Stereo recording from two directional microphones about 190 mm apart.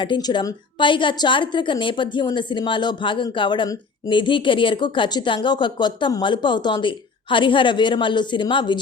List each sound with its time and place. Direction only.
0.0 s a woman's voice: 25° left (ahead or behind)